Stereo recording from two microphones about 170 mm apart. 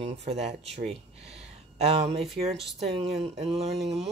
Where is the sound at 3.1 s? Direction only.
40° right (ahead or behind).